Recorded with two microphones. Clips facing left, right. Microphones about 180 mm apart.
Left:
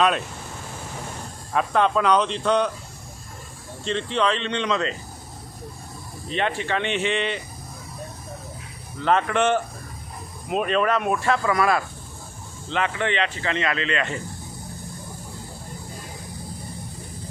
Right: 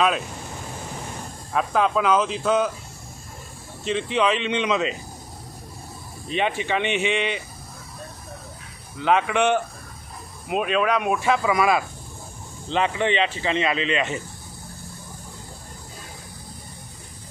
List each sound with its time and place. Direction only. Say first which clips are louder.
1.5 s speech: left 1 dB; centre (ahead or behind)
3.8 s speech: right 1 dB; 10° right (ahead or behind)
6.3 s speech: right 1 dB; 10° right (ahead or behind)
9.0 s speech: even; 10° right (ahead or behind)